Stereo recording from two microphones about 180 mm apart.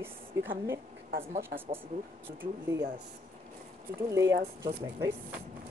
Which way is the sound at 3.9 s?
15° right (ahead or behind).